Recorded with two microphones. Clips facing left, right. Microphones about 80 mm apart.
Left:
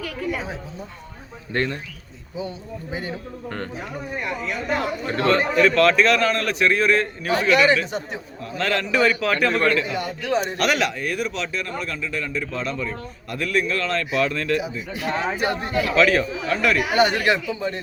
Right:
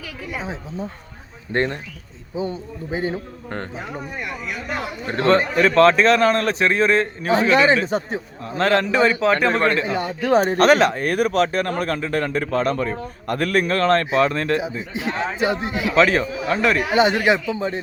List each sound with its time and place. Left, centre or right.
0.3 s a man's voice: right
5.0 s a man's voice: right
16.0 s a man's voice: right